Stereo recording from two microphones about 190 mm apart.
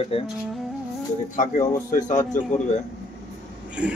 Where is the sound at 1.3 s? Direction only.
40° left (ahead or behind).